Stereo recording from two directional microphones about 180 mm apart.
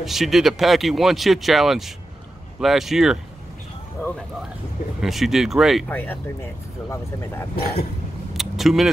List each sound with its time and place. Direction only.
0.0 s speech: centre (ahead or behind)
5.0 s speech: centre (ahead or behind)
5.9 s speech: 10° left (ahead or behind)
7.5 s speech: 60° left (ahead or behind)
8.3 s vehicle: centre (ahead or behind)